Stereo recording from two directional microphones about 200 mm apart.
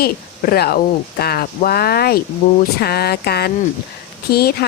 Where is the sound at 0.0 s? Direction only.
50° left (ahead or behind).